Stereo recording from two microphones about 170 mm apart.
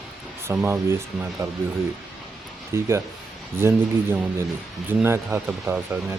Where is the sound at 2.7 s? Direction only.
15° right (ahead or behind).